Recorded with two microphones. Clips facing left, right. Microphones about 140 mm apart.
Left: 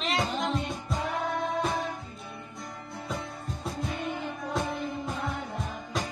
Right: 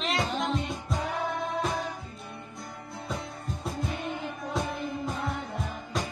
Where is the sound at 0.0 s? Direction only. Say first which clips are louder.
Even; centre (ahead or behind).